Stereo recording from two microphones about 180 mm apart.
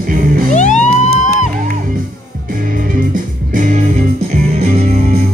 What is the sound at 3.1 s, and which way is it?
Music, 50° right (ahead or behind).